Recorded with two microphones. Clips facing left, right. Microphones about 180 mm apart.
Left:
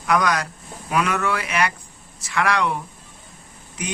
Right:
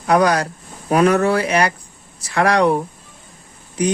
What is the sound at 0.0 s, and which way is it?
Speech, 35° right (ahead or behind).